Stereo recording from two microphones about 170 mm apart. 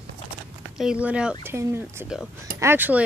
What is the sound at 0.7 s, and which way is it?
Speech, 5° right (ahead or behind).